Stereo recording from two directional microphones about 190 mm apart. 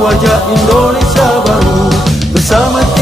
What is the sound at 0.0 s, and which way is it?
Music, centre (ahead or behind).